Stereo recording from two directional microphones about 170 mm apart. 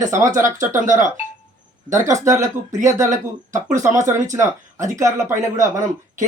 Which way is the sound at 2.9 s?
45° right (ahead or behind).